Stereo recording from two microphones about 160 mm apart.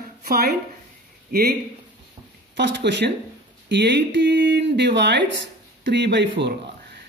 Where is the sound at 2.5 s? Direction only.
90° right.